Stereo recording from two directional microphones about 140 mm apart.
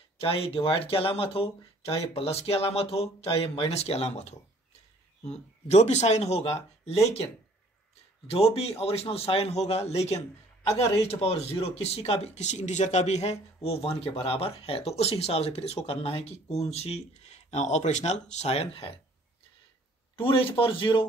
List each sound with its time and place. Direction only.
0.2 s speech: 45° left (ahead or behind)
5.7 s speech: 50° left (ahead or behind)
8.5 s speech: 45° left (ahead or behind)
20.2 s speech: 40° left (ahead or behind)